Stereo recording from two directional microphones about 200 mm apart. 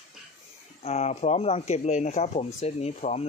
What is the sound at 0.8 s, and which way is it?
Speech, 35° left (ahead or behind).